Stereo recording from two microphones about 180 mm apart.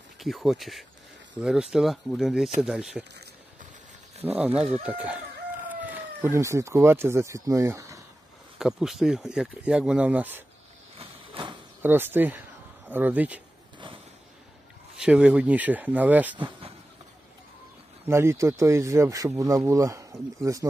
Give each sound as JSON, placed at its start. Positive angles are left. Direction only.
{"t": 0.2, "sound": "speech", "side_deg": 0}
{"t": 4.2, "sound": "speech", "side_deg": -10}
{"t": 8.5, "sound": "speech", "side_deg": -5}
{"t": 11.0, "sound": "a sound", "side_deg": -25}
{"t": 11.8, "sound": "speech", "side_deg": -10}
{"t": 15.0, "sound": "speech", "side_deg": -5}
{"t": 16.3, "sound": "speech", "side_deg": -30}
{"t": 18.0, "sound": "speech", "side_deg": -15}